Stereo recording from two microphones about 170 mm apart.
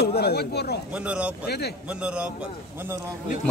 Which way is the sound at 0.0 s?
70° left (ahead or behind).